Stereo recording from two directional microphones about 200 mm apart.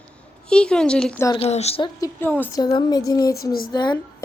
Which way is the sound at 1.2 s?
30° left (ahead or behind).